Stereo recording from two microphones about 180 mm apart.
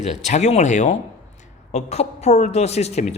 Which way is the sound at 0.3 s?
40° left (ahead or behind).